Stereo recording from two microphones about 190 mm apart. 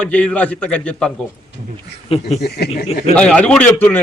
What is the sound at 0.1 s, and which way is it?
A man's voice, 5° left (ahead or behind).